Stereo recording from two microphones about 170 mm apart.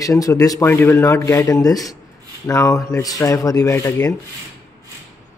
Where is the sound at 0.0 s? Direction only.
20° left (ahead or behind).